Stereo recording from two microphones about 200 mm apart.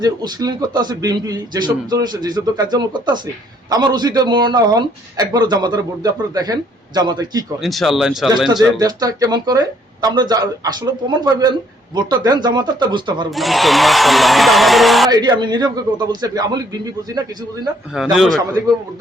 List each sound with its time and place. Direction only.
0.0 s speech: 20° right (ahead or behind)
7.6 s speech: centre (ahead or behind)
8.8 s speech: 20° right (ahead or behind)
13.3 s speech: centre (ahead or behind)
15.1 s speech: 20° right (ahead or behind)
17.9 s speech: 5° right (ahead or behind)